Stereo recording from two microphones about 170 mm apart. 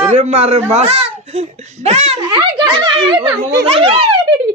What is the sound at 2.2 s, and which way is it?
Speech, 25° right (ahead or behind).